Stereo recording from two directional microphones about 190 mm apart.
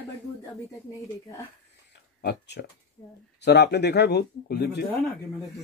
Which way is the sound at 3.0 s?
15° left (ahead or behind).